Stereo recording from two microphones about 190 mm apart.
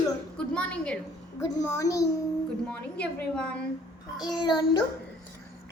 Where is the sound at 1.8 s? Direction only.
15° left (ahead or behind).